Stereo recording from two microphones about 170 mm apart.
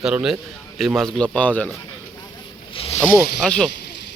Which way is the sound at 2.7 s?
35° left (ahead or behind).